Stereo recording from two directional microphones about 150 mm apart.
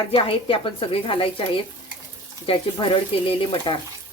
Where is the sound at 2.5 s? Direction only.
40° left (ahead or behind).